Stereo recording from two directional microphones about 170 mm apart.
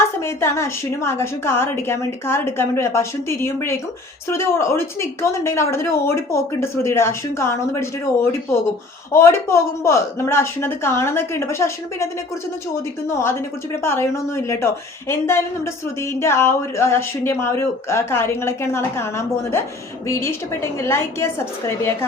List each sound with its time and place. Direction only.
0.2 s a woman's voice: 15° left (ahead or behind)